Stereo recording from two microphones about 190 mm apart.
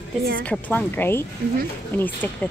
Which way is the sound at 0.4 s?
10° left (ahead or behind).